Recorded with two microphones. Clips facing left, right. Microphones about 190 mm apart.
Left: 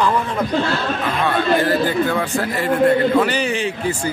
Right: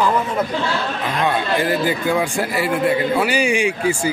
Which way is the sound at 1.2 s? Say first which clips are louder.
Left 2 dB; 10° right (ahead or behind).